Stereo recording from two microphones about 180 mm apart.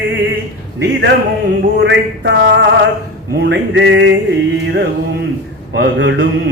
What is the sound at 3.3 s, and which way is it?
Music, 65° right (ahead or behind).